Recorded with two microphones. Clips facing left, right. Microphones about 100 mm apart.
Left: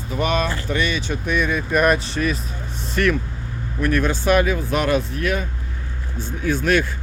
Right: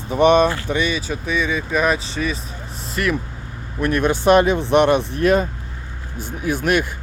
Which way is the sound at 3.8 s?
20° right (ahead or behind).